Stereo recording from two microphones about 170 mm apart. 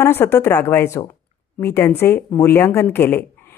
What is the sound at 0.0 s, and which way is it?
Speech, 15° left (ahead or behind).